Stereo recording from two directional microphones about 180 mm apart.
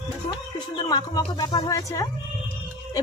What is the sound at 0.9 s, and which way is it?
A woman's voice, 20° left (ahead or behind).